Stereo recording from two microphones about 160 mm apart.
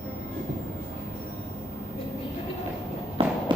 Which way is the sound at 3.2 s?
35° right (ahead or behind).